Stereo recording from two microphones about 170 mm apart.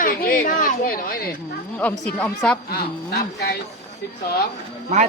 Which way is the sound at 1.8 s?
10° left (ahead or behind).